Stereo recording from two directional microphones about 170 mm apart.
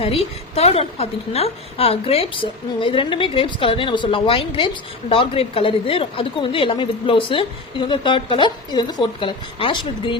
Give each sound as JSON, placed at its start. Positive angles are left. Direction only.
{"t": 0.0, "sound": "a woman's voice", "side_deg": 35}